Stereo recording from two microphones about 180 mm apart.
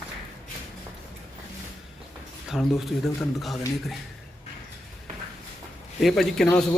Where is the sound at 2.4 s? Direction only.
Centre (ahead or behind).